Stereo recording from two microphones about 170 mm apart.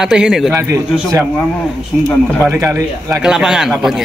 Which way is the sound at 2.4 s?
15° right (ahead or behind).